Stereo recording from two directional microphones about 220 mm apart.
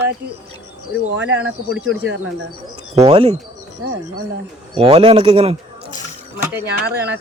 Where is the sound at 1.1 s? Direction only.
55° right (ahead or behind).